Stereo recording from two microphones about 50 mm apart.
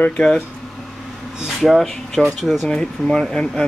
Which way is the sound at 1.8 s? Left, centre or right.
Centre.